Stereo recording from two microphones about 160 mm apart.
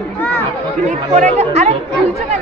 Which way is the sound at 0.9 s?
45° right (ahead or behind).